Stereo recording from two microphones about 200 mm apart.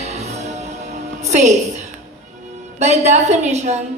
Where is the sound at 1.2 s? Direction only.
35° right (ahead or behind).